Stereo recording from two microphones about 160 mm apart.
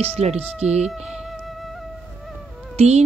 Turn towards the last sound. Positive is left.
turn(degrees=-45)  # may be behind; listen again after turning